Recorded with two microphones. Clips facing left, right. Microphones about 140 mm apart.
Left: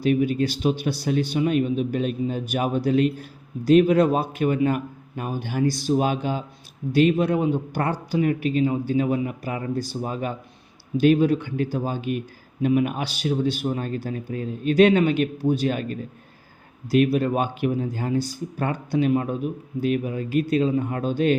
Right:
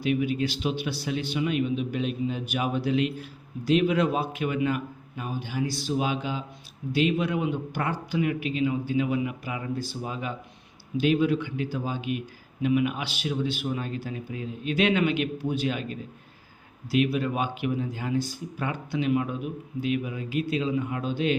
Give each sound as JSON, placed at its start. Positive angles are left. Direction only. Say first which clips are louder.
{"t": 0.0, "sound": "a man's voice", "louder": "left 5 dB", "side_deg": 40}